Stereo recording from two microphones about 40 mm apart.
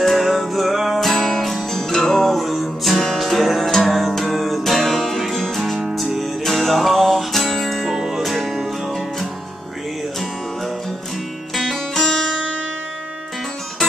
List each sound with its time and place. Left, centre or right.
0.0 s music: centre
11.5 s music: centre